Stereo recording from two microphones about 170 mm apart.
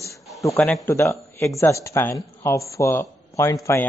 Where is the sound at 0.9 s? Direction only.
15° left (ahead or behind).